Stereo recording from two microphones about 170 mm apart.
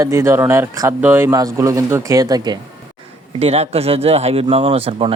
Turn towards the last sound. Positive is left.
turn(degrees=-35)  # may be behind; listen again after turning